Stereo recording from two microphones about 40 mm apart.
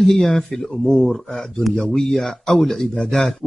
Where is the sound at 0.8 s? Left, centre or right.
Centre.